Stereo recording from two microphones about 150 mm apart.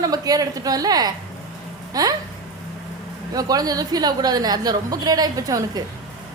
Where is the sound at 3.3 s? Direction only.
25° right (ahead or behind).